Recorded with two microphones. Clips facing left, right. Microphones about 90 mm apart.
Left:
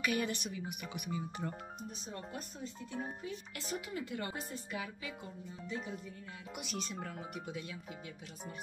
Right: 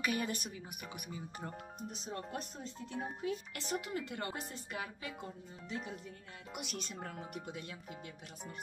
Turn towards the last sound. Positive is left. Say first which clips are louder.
# left 2 dB
turn(degrees=-45)  # may be behind; listen again after turning